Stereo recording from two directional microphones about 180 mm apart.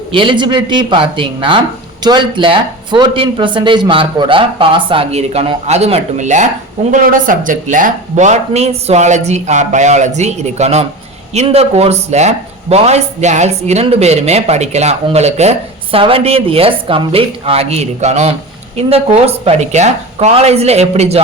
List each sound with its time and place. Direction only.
0.1 s speech: 30° right (ahead or behind)